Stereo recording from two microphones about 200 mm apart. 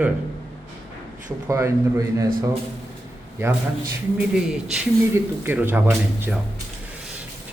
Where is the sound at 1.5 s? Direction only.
15° right (ahead or behind).